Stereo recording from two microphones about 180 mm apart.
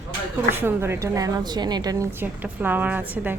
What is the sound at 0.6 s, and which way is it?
A woman's voice, 15° right (ahead or behind).